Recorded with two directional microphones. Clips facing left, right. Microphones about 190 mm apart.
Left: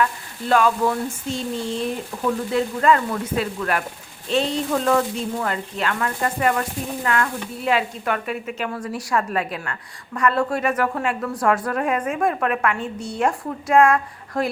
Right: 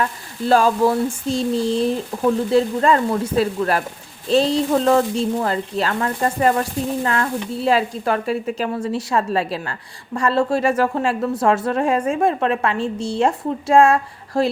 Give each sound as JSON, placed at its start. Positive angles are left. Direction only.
{"t": 0.0, "sound": "a woman's voice", "side_deg": -35}